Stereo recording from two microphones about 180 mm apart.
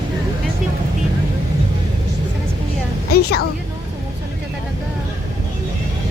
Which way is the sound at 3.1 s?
60° left (ahead or behind).